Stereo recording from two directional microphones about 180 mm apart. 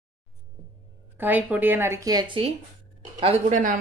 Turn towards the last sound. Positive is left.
turn(degrees=-45)  # may be behind; listen again after turning